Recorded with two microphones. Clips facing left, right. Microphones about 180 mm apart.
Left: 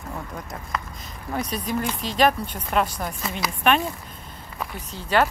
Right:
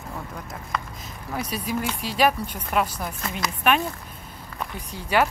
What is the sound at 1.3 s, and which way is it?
Speech, 5° right (ahead or behind).